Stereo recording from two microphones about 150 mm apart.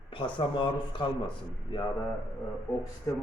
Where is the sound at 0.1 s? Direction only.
35° left (ahead or behind).